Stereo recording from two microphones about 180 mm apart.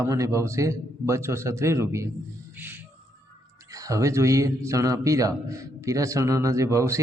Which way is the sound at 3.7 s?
20° right (ahead or behind).